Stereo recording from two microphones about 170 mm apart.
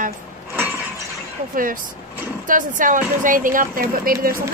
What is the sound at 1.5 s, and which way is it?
Speech, 55° right (ahead or behind).